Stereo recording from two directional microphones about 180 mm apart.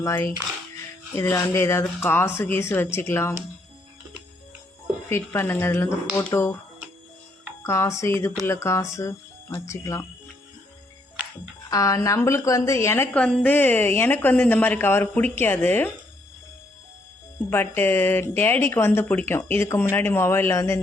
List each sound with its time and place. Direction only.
0.0 s a woman's voice: 15° left (ahead or behind)
5.0 s a woman's voice: 15° left (ahead or behind)
7.6 s a woman's voice: 15° left (ahead or behind)
11.7 s a woman's voice: 20° left (ahead or behind)
17.5 s a woman's voice: 10° left (ahead or behind)